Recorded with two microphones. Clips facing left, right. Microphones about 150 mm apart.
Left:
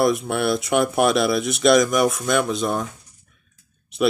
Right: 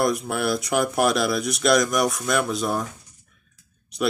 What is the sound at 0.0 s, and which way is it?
Speech, centre (ahead or behind).